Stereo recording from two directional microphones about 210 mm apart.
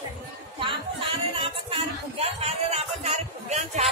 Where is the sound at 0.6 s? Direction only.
25° right (ahead or behind).